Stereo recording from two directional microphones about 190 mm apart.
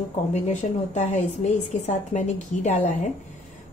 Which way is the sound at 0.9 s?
35° left (ahead or behind).